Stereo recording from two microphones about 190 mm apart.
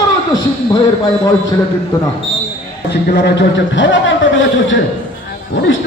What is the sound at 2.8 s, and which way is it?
A man's voice, 60° left (ahead or behind).